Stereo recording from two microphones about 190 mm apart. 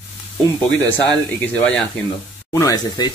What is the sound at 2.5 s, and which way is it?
Speech, 15° left (ahead or behind).